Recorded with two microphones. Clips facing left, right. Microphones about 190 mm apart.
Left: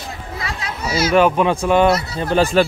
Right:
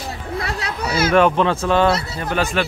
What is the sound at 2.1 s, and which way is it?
Speech, 30° left (ahead or behind).